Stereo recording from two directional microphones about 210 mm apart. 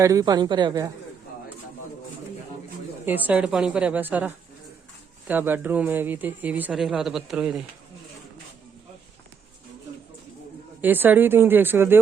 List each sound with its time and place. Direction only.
0.0 s a woman's voice: 15° right (ahead or behind)
3.1 s speech: 5° right (ahead or behind)
5.3 s speech: 10° right (ahead or behind)
10.8 s speech: 10° right (ahead or behind)